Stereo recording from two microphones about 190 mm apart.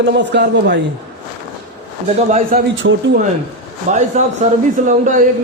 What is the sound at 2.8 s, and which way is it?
Speech, 70° right (ahead or behind).